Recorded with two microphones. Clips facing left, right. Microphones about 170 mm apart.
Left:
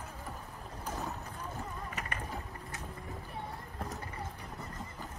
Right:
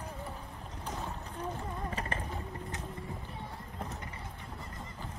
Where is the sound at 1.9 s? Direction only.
30° right (ahead or behind).